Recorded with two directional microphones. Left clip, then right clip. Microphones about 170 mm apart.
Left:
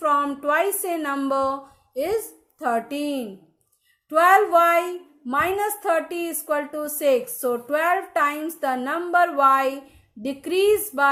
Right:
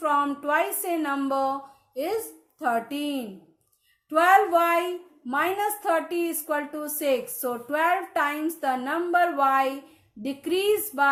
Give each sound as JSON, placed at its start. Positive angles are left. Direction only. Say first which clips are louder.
{"t": 0.0, "sound": "a woman's voice", "louder": "left 3 dB", "side_deg": 30}